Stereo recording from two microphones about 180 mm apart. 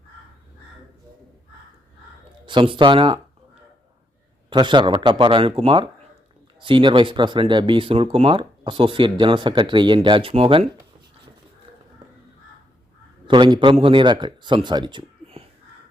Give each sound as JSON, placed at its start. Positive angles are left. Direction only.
{"t": 2.5, "sound": "speech", "side_deg": -25}
{"t": 4.4, "sound": "speech", "side_deg": -25}
{"t": 13.2, "sound": "speech", "side_deg": -25}